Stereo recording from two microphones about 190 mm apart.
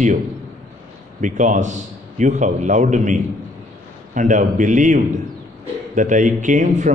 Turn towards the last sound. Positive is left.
turn(degrees=-40)  # may be behind; listen again after turning